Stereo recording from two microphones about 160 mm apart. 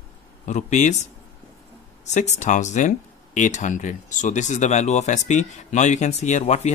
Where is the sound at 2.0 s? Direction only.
45° left (ahead or behind).